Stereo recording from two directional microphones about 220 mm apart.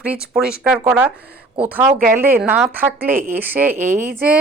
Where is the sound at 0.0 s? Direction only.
5° right (ahead or behind).